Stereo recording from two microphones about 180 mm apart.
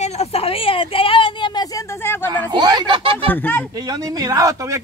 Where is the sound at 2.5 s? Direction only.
25° right (ahead or behind).